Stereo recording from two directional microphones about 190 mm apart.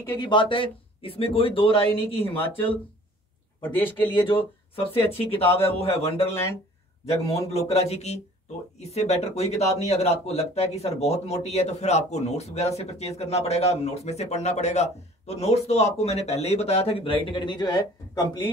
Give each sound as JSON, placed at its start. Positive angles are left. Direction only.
{"t": 0.2, "sound": "speech", "side_deg": 25}
{"t": 2.1, "sound": "speech", "side_deg": 10}
{"t": 4.3, "sound": "speech", "side_deg": 30}
{"t": 5.5, "sound": "speech", "side_deg": 10}
{"t": 5.8, "sound": "speech", "side_deg": 30}
{"t": 6.2, "sound": "speech", "side_deg": 15}
{"t": 7.2, "sound": "speech", "side_deg": 30}